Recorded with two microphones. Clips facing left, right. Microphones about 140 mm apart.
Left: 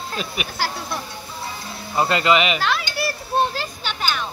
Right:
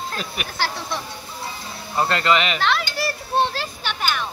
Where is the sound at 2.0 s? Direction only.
5° left (ahead or behind).